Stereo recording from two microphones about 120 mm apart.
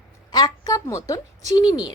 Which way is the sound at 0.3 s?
35° left (ahead or behind).